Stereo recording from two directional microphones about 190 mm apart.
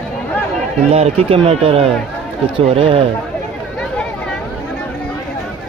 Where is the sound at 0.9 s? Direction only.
30° right (ahead or behind).